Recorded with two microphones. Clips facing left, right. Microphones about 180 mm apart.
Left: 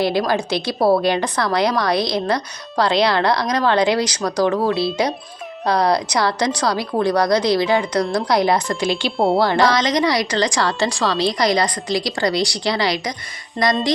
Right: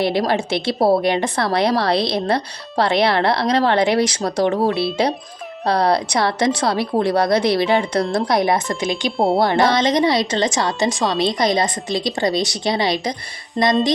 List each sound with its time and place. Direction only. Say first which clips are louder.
0.0 s a woman's voice: even; 25° right (ahead or behind)
9.1 s speech: even; centre (ahead or behind)
9.4 s a woman's voice: right 1 dB; 25° right (ahead or behind)